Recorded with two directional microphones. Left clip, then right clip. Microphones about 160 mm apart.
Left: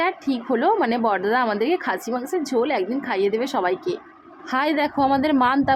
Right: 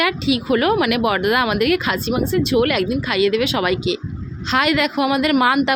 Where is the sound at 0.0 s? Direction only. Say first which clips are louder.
Right 4 dB; 25° right (ahead or behind).